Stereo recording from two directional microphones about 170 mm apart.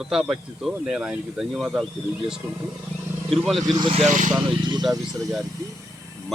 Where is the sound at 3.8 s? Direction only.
35° right (ahead or behind).